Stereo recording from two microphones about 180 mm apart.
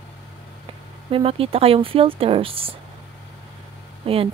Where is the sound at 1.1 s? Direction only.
30° right (ahead or behind).